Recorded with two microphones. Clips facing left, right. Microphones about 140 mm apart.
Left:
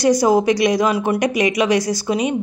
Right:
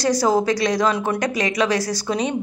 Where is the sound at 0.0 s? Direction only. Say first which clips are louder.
Left 4 dB; 15° left (ahead or behind).